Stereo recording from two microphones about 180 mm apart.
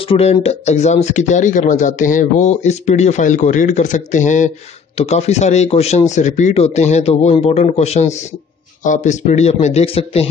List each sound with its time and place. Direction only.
0.0 s speech: 35° left (ahead or behind)